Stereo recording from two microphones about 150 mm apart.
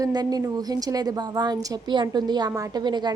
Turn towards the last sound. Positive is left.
turn(degrees=-30)  # may be behind; listen again after turning